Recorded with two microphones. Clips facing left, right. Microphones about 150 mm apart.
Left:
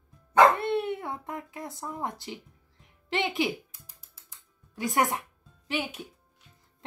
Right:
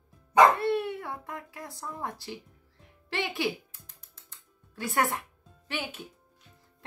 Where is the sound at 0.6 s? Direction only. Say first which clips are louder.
Even; 20° left (ahead or behind).